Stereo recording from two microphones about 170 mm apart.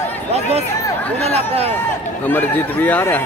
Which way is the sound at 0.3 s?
40° right (ahead or behind).